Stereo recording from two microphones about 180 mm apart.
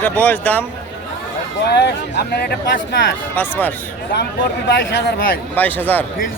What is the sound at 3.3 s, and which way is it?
Speech, 10° left (ahead or behind).